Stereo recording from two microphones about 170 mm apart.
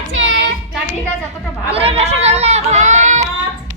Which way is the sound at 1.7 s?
35° right (ahead or behind).